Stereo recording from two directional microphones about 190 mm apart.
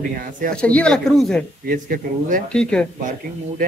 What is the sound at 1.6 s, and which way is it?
Speech, 50° right (ahead or behind).